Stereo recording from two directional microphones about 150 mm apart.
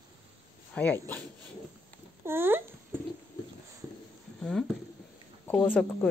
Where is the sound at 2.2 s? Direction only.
15° right (ahead or behind).